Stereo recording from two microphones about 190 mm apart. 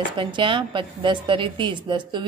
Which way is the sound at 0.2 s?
25° right (ahead or behind).